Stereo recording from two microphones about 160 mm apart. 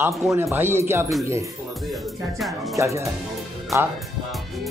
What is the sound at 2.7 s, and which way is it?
Speech, 20° right (ahead or behind).